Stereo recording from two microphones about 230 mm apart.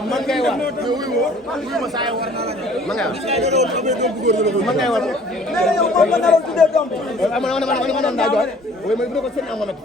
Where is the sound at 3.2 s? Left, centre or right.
Right.